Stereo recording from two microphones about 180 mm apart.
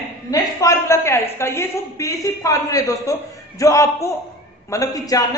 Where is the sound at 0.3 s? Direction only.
15° left (ahead or behind).